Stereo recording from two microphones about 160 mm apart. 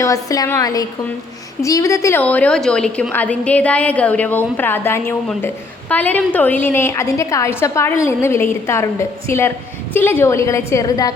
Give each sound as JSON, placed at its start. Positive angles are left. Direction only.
{"t": 0.0, "sound": "a woman's voice", "side_deg": 20}